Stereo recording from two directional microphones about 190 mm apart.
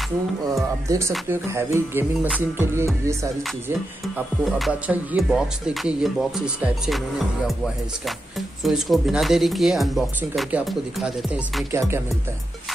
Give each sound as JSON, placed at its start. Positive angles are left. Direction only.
{"t": 0.8, "sound": "music", "side_deg": -15}
{"t": 4.5, "sound": "speech", "side_deg": 0}
{"t": 8.6, "sound": "speech", "side_deg": 0}
{"t": 11.7, "sound": "music", "side_deg": -15}